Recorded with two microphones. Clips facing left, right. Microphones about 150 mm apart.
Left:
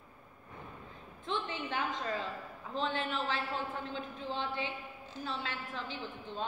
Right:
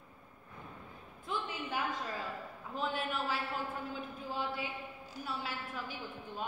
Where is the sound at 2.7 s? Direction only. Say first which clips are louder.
Left 2 dB; 5° right (ahead or behind).